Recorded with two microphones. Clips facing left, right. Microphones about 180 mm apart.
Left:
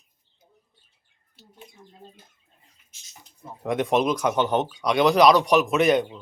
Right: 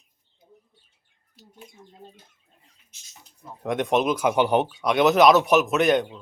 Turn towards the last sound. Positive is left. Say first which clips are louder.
# left 1 dB
turn(degrees=0)  # may be behind; listen again after turning